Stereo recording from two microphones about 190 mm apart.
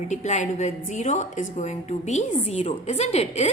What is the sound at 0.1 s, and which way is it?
A woman's voice, 40° left (ahead or behind).